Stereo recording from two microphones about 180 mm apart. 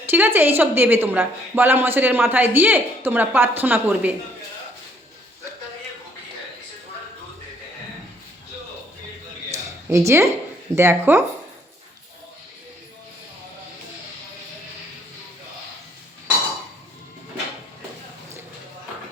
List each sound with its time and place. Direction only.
0.0 s a woman's voice: 10° right (ahead or behind)
9.5 s a sound: 15° right (ahead or behind)
10.8 s a woman's voice: 15° right (ahead or behind)